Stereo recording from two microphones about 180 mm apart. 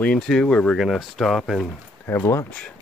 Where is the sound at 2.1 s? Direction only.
15° left (ahead or behind).